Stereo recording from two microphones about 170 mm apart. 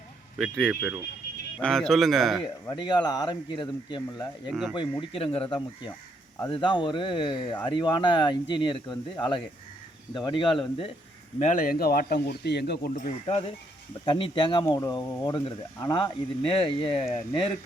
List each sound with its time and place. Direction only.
0.3 s a man's voice: centre (ahead or behind)
1.6 s a man's voice: 5° left (ahead or behind)
2.6 s speech: 25° left (ahead or behind)
10.2 s speech: 25° left (ahead or behind)
11.3 s a man's voice: 45° left (ahead or behind); by 12.9 s 75° left (ahead or behind)
13.2 s speech: 35° left (ahead or behind)
14.0 s speech: 25° left (ahead or behind)